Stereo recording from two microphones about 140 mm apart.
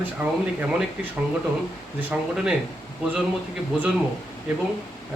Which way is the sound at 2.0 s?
10° right (ahead or behind).